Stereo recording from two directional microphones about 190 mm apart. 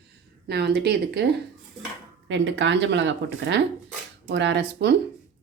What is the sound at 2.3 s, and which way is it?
Speech, 75° right (ahead or behind).